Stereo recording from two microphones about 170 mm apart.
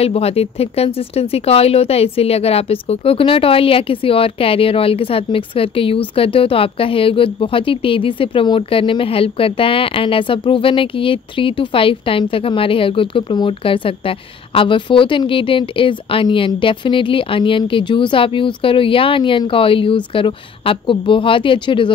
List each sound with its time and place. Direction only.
0.0 s speech: 35° left (ahead or behind)